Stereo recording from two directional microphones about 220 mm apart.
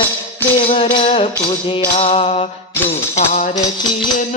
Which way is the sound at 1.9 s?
30° left (ahead or behind).